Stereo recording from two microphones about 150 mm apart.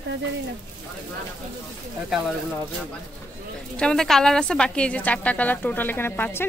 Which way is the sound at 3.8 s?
5° left (ahead or behind).